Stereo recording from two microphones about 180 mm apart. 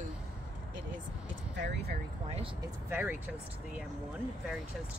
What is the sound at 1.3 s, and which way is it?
Speech, 85° right.